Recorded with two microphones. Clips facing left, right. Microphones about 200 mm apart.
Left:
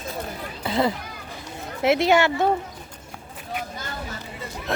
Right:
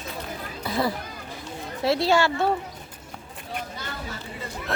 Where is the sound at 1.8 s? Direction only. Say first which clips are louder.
Left 3 dB; 20° left (ahead or behind).